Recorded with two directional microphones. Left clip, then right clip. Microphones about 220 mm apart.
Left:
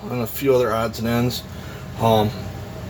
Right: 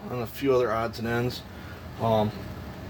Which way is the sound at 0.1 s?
35° right (ahead or behind).